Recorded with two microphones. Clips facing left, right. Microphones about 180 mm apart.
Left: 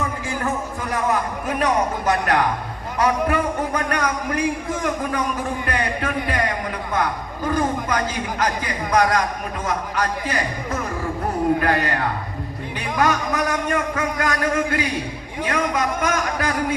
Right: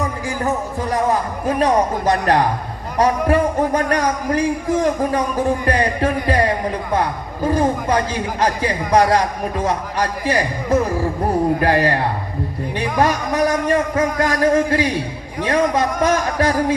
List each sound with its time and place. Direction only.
0.8 s a man's voice: 35° right (ahead or behind)